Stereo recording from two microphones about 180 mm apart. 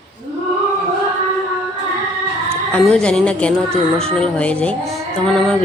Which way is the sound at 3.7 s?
35° right (ahead or behind).